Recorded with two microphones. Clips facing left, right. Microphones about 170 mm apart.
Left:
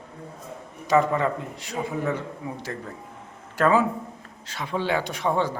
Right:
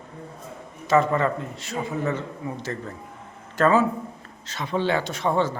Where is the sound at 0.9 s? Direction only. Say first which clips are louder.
Right 1 dB; 15° left (ahead or behind).